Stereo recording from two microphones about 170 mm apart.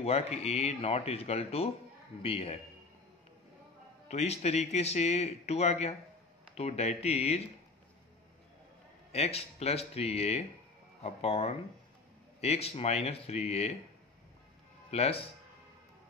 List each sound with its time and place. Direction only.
0.0 s speech: 40° left (ahead or behind)
4.1 s speech: 40° left (ahead or behind)
9.1 s speech: 35° left (ahead or behind)
14.9 s speech: 35° left (ahead or behind)